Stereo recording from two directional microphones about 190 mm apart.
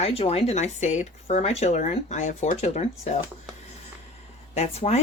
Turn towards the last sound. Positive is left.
turn(degrees=35)  # may be behind; listen again after turning